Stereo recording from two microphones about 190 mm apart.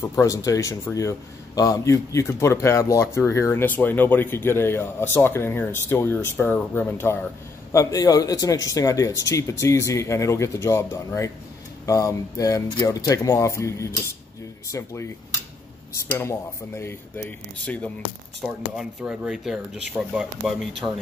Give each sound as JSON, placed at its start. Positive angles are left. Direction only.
{"t": 0.0, "sound": "a man's voice", "side_deg": 15}
{"t": 16.2, "sound": "a man's voice", "side_deg": 15}
{"t": 18.4, "sound": "speech", "side_deg": -5}